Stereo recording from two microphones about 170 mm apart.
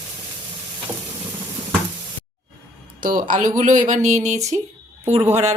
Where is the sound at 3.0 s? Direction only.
55° right (ahead or behind).